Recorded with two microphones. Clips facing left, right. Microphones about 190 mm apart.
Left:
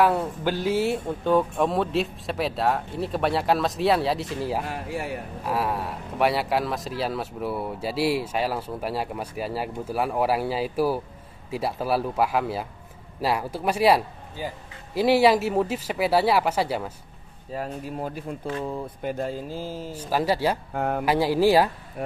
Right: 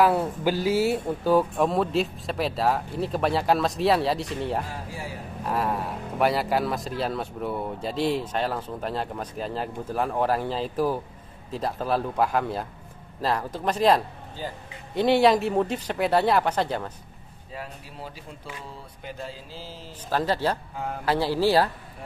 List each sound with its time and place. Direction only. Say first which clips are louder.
0.0 s speech: right 1 dB; 5° right (ahead or behind)
4.6 s speech: left 5 dB; 65° left (ahead or behind)
5.4 s speech: even; 5° left (ahead or behind)
17.5 s speech: left 8 dB; 45° left (ahead or behind)
19.9 s speech: left 1 dB; 10° left (ahead or behind)
20.7 s speech: left 7 dB; 60° left (ahead or behind)
21.0 s speech: left 2 dB; 15° left (ahead or behind)